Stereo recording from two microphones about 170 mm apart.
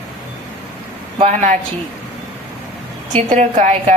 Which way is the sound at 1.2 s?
45° right (ahead or behind).